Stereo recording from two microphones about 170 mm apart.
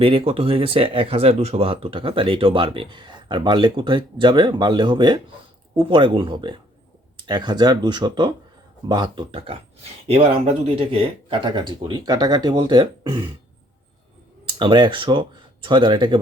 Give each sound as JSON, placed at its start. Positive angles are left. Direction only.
{"t": 0.0, "sound": "speech", "side_deg": -35}
{"t": 14.4, "sound": "speech", "side_deg": -30}